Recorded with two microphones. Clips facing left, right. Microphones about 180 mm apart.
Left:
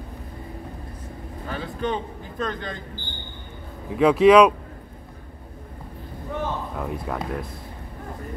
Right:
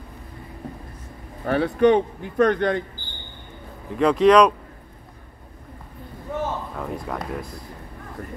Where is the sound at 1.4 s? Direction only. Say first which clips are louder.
Right 11 dB; 70° right (ahead or behind).